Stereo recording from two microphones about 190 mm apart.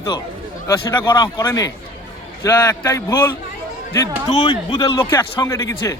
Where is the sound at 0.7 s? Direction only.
20° left (ahead or behind).